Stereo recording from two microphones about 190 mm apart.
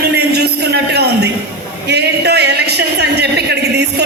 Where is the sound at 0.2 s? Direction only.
60° right (ahead or behind).